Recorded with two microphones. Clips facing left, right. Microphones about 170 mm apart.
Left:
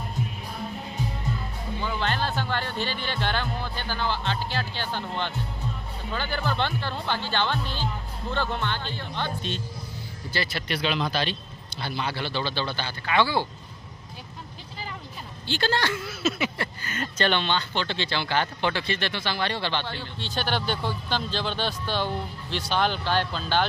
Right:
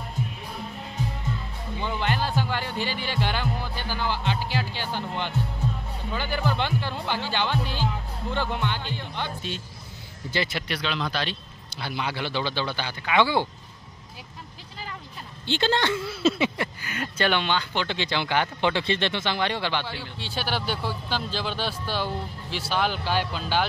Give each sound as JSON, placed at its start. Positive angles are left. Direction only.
{"t": 1.8, "sound": "speech", "side_deg": -15}
{"t": 10.7, "sound": "speech", "side_deg": 5}
{"t": 11.8, "sound": "speech", "side_deg": -15}
{"t": 15.4, "sound": "speech", "side_deg": -20}
{"t": 16.8, "sound": "speech", "side_deg": -10}